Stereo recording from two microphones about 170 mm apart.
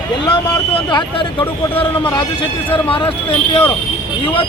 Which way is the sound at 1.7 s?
10° left (ahead or behind).